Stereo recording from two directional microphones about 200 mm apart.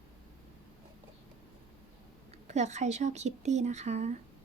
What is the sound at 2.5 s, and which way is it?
Speech, 35° right (ahead or behind).